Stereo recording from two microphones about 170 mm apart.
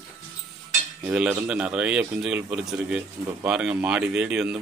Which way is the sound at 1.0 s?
10° right (ahead or behind).